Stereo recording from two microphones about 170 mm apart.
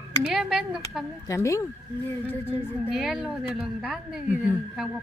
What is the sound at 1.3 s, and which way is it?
Speech, 20° left (ahead or behind).